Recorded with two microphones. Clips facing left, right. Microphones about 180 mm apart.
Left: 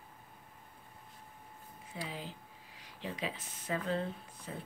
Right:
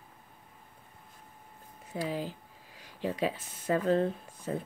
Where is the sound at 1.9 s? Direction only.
45° right (ahead or behind).